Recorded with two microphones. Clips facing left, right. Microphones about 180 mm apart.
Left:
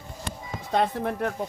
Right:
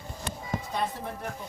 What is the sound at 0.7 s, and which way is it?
Speech, 70° left (ahead or behind).